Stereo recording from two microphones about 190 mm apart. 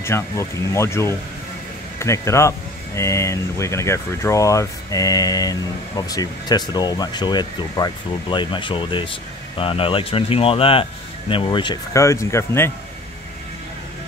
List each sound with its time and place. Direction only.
0.0 s speech: 15° left (ahead or behind)